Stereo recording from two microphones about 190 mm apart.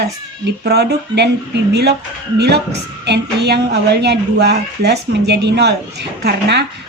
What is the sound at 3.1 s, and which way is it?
A woman's voice, 60° right (ahead or behind).